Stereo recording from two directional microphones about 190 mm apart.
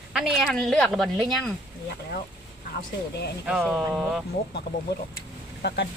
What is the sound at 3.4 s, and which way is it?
Speech, 5° right (ahead or behind).